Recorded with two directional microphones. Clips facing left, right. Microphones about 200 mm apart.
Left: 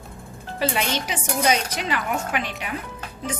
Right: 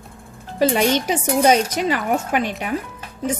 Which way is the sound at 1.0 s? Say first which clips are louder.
Right 7 dB; 45° right (ahead or behind).